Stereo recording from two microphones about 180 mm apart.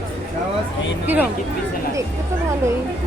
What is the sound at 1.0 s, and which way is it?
Speech, 10° right (ahead or behind).